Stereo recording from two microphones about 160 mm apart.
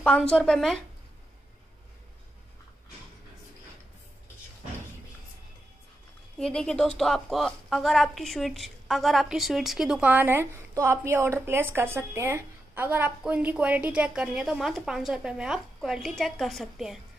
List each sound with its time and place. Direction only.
0.0 s a woman's voice: 5° left (ahead or behind)
6.3 s a woman's voice: 5° left (ahead or behind)